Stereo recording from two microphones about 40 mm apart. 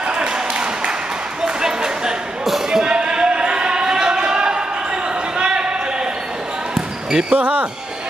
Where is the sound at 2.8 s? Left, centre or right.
Right.